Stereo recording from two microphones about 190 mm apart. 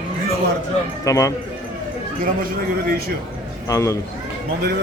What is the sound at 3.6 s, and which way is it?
Speech, 15° left (ahead or behind).